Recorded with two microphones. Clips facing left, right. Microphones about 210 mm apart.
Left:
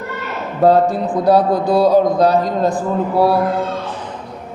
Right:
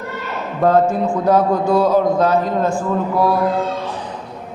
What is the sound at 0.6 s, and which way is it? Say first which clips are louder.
A man's voice: left 2 dB; 35° left (ahead or behind).